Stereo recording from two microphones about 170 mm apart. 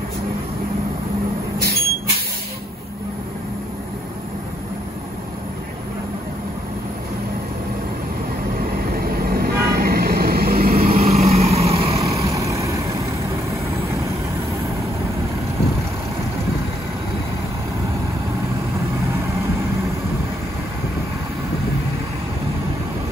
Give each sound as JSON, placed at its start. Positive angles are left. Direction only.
{"t": 8.5, "sound": "vehicle", "side_deg": -60}
{"t": 10.9, "sound": "vehicle", "side_deg": -40}
{"t": 12.3, "sound": "vehicle", "side_deg": -20}